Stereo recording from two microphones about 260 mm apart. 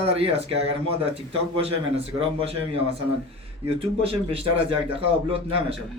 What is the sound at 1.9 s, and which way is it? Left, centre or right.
Speech, right.